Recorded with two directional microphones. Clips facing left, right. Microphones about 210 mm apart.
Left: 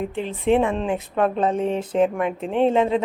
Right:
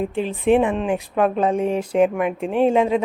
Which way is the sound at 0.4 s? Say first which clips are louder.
Right 2 dB; 15° right (ahead or behind).